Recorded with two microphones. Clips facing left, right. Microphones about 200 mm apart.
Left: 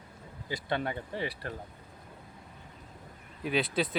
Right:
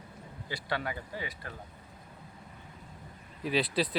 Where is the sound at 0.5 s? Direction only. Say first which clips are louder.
Left 3 dB; 25° left (ahead or behind).